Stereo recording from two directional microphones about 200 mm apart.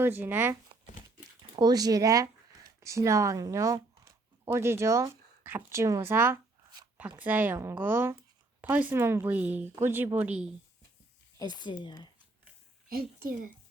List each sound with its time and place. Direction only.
0.0 s speech: 10° right (ahead or behind)
1.5 s speech: 20° right (ahead or behind)
11.3 s speech: 20° left (ahead or behind)
12.9 s a woman's voice: 50° right (ahead or behind)